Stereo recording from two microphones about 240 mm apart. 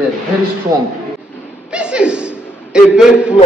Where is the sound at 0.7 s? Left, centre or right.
Centre.